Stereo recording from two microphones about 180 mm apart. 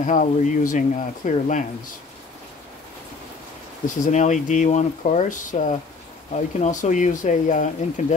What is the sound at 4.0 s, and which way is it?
Speech, 40° left (ahead or behind).